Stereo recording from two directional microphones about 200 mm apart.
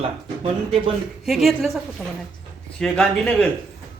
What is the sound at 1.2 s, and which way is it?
A man's voice, centre (ahead or behind).